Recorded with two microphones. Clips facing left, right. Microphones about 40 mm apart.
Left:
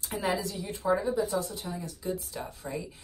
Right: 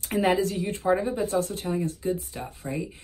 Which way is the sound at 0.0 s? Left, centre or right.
Right.